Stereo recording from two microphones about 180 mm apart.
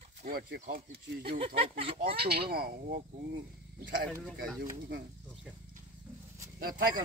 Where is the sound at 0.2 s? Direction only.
55° right (ahead or behind).